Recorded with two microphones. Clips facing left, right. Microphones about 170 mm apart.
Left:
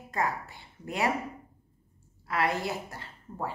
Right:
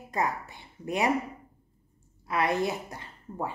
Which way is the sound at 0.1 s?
20° right (ahead or behind).